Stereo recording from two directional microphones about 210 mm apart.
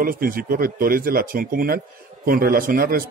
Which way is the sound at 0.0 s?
45° right (ahead or behind).